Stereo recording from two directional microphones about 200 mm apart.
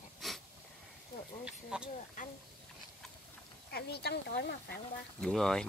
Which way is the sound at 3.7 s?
55° left (ahead or behind).